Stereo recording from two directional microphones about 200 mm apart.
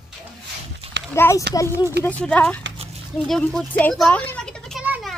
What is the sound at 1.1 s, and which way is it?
Speech, 15° left (ahead or behind).